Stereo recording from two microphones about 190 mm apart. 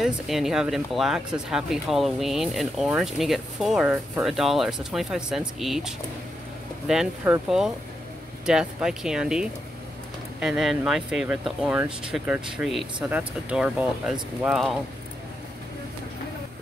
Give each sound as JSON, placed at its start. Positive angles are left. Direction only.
{"t": 0.0, "sound": "speech", "side_deg": 0}